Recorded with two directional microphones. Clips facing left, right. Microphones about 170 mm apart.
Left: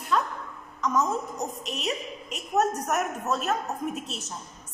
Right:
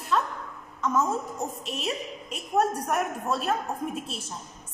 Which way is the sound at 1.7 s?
30° right (ahead or behind).